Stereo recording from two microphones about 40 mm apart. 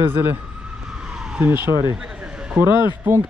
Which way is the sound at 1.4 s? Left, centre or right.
Right.